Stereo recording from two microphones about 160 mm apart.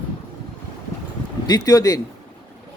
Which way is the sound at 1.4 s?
25° left (ahead or behind).